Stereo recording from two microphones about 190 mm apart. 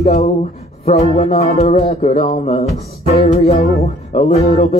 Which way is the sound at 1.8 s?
50° left (ahead or behind).